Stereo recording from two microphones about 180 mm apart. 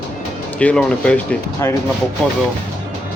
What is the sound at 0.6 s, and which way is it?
Speech, 5° left (ahead or behind).